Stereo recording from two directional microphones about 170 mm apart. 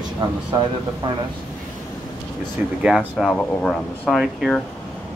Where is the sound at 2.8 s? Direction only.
Centre (ahead or behind).